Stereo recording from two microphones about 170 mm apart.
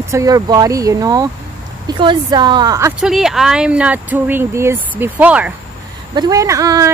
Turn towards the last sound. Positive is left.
turn(degrees=-20)  # may be behind; listen again after turning